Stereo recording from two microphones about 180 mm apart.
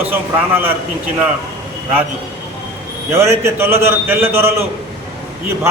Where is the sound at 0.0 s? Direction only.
10° right (ahead or behind).